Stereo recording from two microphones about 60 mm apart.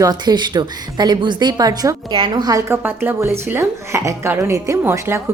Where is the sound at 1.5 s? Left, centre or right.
Right.